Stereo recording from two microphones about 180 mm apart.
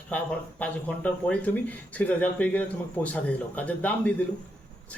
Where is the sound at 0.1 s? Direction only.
5° left (ahead or behind).